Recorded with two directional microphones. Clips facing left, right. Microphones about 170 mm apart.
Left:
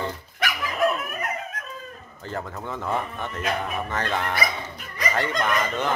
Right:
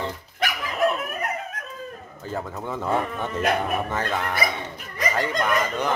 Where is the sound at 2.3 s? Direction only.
10° right (ahead or behind).